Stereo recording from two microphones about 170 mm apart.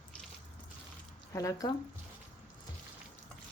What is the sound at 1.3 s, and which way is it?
Speech, 20° left (ahead or behind).